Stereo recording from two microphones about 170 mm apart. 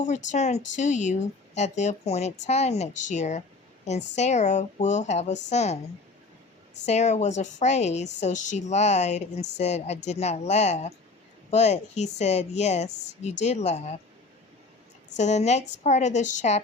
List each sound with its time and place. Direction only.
0.3 s a woman's voice: 40° left (ahead or behind)
6.8 s a woman's voice: 40° left (ahead or behind)
15.1 s a woman's voice: 45° left (ahead or behind)